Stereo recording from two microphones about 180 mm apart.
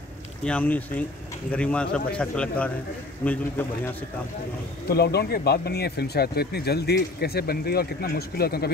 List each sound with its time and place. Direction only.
0.5 s speech: 10° left (ahead or behind)
4.8 s speech: 60° left (ahead or behind)